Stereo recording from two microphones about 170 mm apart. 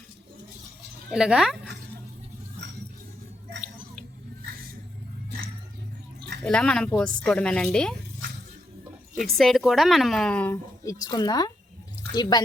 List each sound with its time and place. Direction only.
1.1 s a woman's voice: 5° right (ahead or behind)
6.4 s a woman's voice: 5° left (ahead or behind)
9.4 s a woman's voice: centre (ahead or behind)
10.8 s speech: 20° left (ahead or behind)